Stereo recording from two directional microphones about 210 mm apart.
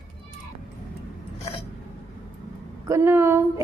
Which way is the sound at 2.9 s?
10° right (ahead or behind).